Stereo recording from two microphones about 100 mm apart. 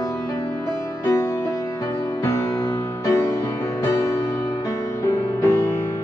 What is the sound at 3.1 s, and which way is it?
Music, 30° left (ahead or behind).